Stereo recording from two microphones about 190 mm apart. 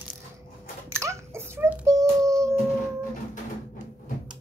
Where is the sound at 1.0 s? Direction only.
15° right (ahead or behind).